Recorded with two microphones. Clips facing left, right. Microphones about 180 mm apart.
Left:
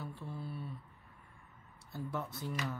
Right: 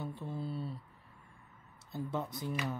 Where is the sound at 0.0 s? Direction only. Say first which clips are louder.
Right 4 dB; 20° right (ahead or behind).